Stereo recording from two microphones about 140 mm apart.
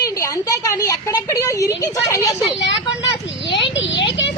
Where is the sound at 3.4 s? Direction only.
35° left (ahead or behind).